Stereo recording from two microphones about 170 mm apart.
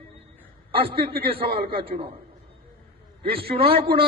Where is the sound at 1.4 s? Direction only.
65° right (ahead or behind).